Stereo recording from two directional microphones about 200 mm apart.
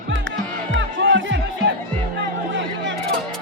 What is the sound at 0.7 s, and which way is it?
Music, 65° right (ahead or behind).